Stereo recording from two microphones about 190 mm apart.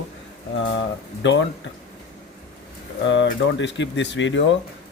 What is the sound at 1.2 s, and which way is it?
Speech, 75° left (ahead or behind).